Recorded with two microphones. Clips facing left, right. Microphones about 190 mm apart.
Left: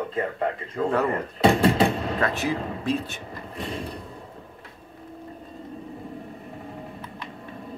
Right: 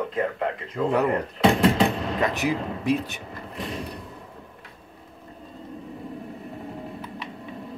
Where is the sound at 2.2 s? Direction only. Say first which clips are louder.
Right 2 dB; 15° right (ahead or behind).